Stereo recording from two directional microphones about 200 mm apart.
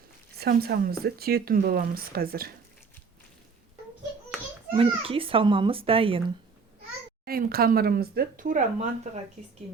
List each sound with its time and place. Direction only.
0.3 s speech: 50° right (ahead or behind)
4.8 s a child's voice: 25° right (ahead or behind)
7.3 s speech: 50° right (ahead or behind)